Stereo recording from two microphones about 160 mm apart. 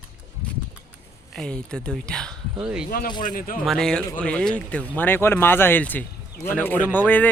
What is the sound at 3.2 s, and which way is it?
Speech, 60° left (ahead or behind).